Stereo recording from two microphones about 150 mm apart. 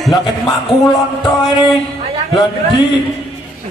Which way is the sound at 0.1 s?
30° left (ahead or behind).